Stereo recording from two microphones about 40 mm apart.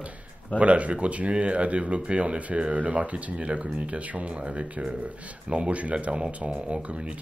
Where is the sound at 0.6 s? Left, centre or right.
Right.